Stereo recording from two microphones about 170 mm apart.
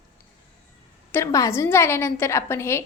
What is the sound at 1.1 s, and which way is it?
A woman's voice, 20° left (ahead or behind).